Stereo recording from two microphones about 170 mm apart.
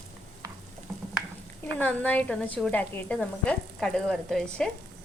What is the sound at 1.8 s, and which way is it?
A woman's voice, 10° left (ahead or behind).